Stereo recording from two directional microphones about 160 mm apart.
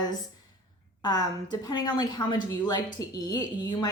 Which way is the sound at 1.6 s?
25° left (ahead or behind).